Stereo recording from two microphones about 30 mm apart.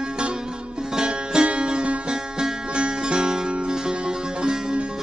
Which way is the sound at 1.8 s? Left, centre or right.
Right.